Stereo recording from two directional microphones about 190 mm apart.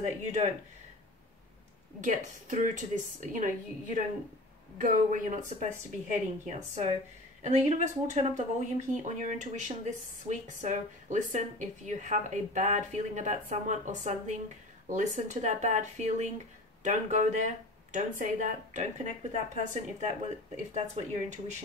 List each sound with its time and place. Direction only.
0.0 s speech: 35° right (ahead or behind)
2.0 s a woman's voice: 40° right (ahead or behind)